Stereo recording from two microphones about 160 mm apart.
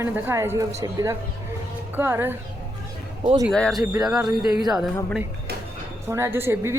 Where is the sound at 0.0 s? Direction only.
15° right (ahead or behind).